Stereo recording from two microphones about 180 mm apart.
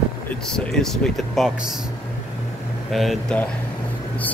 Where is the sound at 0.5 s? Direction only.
5° left (ahead or behind).